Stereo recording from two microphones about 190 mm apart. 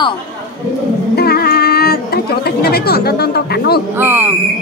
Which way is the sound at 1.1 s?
55° left (ahead or behind).